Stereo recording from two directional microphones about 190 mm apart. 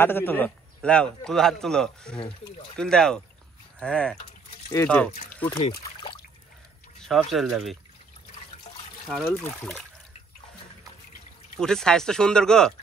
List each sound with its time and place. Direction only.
0.0 s a man's voice: 10° left (ahead or behind)
5.6 s speech: 25° left (ahead or behind)
7.0 s speech: centre (ahead or behind)
9.0 s speech: 5° left (ahead or behind)
11.6 s a man's voice: 5° left (ahead or behind)